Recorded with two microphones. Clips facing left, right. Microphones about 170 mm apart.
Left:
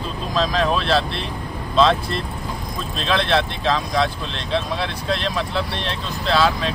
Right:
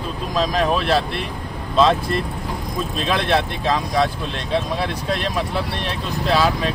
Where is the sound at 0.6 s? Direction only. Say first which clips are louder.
Right 1 dB; 10° right (ahead or behind).